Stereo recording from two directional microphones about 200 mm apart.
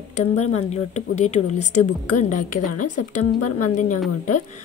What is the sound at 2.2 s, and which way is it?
Speech, 40° left (ahead or behind).